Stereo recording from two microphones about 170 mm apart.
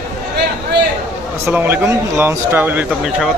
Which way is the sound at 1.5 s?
10° right (ahead or behind).